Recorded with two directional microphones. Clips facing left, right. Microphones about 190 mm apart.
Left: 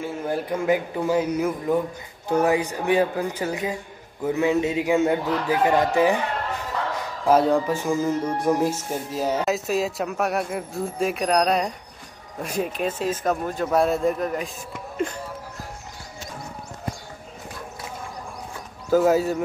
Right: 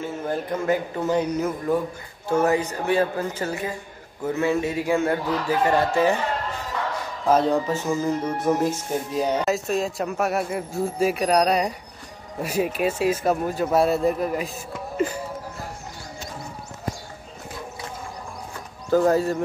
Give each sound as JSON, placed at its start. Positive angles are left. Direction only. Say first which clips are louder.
{"t": 0.0, "sound": "speech", "louder": "left 1 dB", "side_deg": 10}
{"t": 7.2, "sound": "speech", "louder": "left 1 dB", "side_deg": 10}
{"t": 15.0, "sound": "music", "louder": "right 3 dB", "side_deg": -5}
{"t": 18.9, "sound": "speech", "louder": "even", "side_deg": 5}